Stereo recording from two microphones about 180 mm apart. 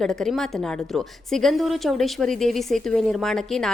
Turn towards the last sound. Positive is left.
turn(degrees=0)  # may be behind; listen again after turning